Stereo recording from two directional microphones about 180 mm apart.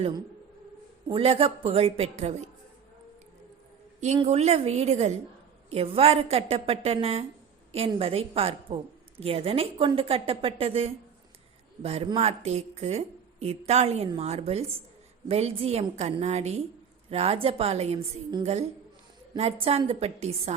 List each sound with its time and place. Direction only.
1.0 s a woman's voice: 30° right (ahead or behind)
4.0 s a woman's voice: 40° right (ahead or behind)
19.4 s a woman's voice: 30° right (ahead or behind)